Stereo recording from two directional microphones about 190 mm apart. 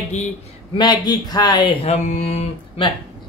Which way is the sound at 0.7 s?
20° left (ahead or behind).